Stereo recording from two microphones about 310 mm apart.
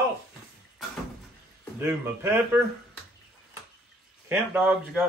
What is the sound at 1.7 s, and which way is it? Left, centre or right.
Speech, centre.